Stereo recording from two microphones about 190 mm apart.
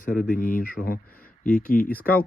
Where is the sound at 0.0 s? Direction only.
45° left (ahead or behind).